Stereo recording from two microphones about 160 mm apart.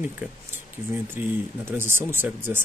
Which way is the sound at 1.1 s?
15° right (ahead or behind).